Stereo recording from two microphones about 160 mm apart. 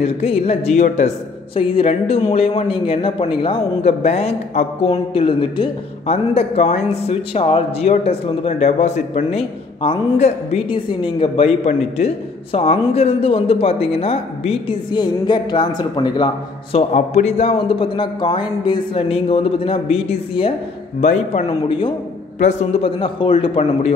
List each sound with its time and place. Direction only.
0.0 s a man's voice: 40° left (ahead or behind)
1.5 s speech: 35° left (ahead or behind)
16.7 s speech: 45° left (ahead or behind)
21.0 s a man's voice: 45° left (ahead or behind)
21.6 s speech: 30° left (ahead or behind)
22.4 s speech: 45° left (ahead or behind)